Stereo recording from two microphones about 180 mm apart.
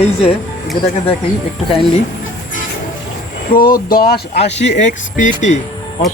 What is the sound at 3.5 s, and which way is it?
Speech, 50° left (ahead or behind).